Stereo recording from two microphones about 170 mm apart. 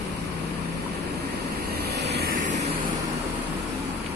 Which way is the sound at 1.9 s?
75° right (ahead or behind).